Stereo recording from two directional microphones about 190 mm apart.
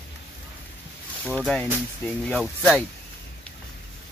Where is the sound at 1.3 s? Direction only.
5° left (ahead or behind).